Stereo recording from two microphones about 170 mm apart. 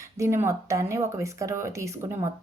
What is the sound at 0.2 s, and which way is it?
Speech, 15° right (ahead or behind).